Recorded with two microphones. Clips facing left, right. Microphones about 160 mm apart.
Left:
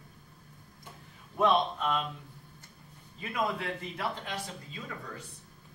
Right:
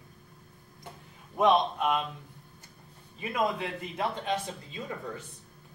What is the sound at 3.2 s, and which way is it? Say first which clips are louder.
Speech: right 3 dB; 20° right (ahead or behind).